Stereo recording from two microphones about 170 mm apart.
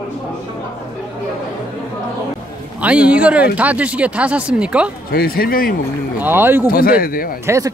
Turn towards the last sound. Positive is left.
turn(degrees=-20)  # may be behind; listen again after turning